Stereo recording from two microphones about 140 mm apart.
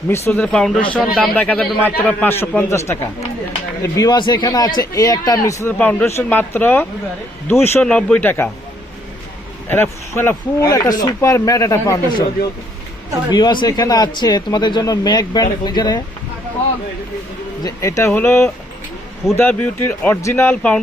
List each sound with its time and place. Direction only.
0.1 s speech: 15° left (ahead or behind)
5.7 s speech: 10° left (ahead or behind)
9.6 s speech: 15° left (ahead or behind)
13.3 s speech: 35° left (ahead or behind)
17.6 s speech: 25° left (ahead or behind)